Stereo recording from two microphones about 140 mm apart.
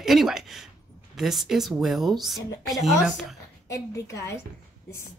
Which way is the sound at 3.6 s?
20° left (ahead or behind).